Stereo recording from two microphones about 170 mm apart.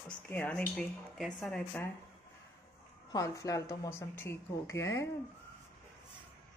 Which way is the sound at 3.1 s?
20° left (ahead or behind).